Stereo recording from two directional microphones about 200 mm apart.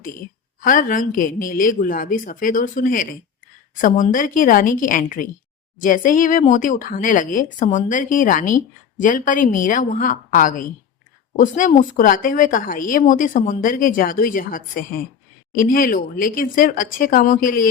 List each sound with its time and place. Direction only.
0.6 s speech: 40° left (ahead or behind)